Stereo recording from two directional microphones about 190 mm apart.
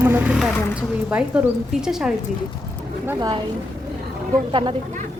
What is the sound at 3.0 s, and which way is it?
Speech, 20° right (ahead or behind).